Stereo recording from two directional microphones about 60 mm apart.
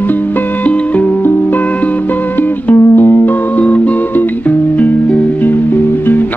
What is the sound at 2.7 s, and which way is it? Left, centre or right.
Music, left.